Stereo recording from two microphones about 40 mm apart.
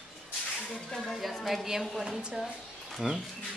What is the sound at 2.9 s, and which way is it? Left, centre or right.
Speech, centre.